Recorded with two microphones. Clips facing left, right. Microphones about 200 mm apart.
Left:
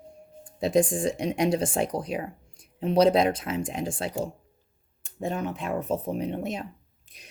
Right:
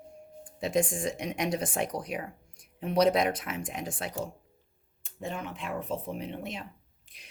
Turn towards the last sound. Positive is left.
turn(degrees=40)  # may be behind; listen again after turning